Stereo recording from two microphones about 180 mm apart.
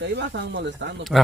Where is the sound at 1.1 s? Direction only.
Centre (ahead or behind).